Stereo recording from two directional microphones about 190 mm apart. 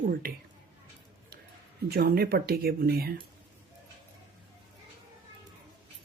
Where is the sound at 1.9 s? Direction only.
50° right (ahead or behind).